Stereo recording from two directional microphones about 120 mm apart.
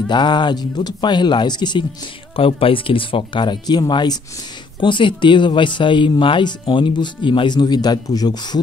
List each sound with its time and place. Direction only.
0.1 s speech: 40° left (ahead or behind)
2.3 s speech: 50° left (ahead or behind); by 8.5 s 35° left (ahead or behind)